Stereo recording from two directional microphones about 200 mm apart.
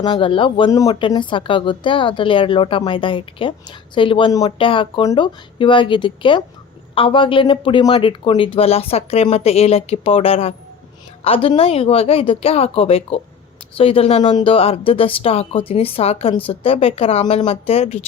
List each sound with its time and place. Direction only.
0.0 s speech: 25° left (ahead or behind)